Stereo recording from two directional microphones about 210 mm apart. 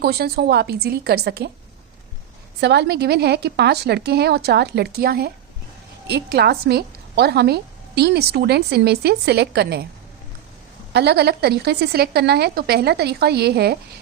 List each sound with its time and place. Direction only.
0.0 s a woman's voice: 50° right (ahead or behind)
2.6 s a woman's voice: 55° right (ahead or behind)
10.9 s a woman's voice: 50° right (ahead or behind)